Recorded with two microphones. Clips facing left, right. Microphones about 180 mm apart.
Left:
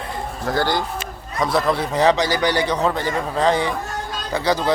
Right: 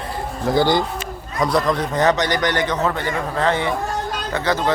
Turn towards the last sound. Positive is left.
turn(degrees=10)  # may be behind; listen again after turning